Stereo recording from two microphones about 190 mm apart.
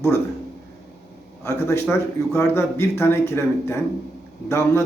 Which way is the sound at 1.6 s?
10° left (ahead or behind).